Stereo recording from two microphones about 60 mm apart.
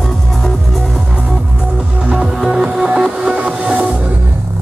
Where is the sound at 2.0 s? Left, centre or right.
Centre.